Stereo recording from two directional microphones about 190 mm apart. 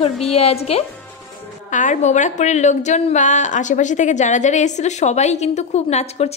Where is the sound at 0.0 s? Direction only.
30° left (ahead or behind).